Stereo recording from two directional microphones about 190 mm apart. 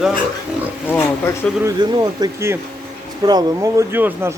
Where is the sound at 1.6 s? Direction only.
20° right (ahead or behind).